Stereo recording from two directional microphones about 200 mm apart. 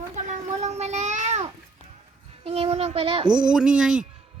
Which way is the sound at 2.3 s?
30° right (ahead or behind).